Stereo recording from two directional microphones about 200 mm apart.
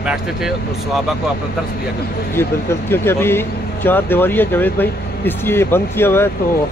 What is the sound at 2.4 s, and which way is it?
Speech, 10° left (ahead or behind).